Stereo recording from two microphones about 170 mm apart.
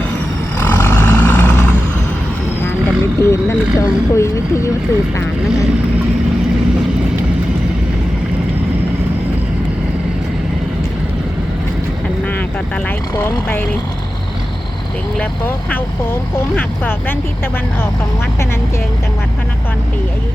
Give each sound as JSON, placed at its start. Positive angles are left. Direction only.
{"t": 0.6, "sound": "vehicle", "side_deg": 15}
{"t": 3.2, "sound": "vehicle", "side_deg": 15}
{"t": 13.2, "sound": "vehicle", "side_deg": 10}
{"t": 15.2, "sound": "speech", "side_deg": 10}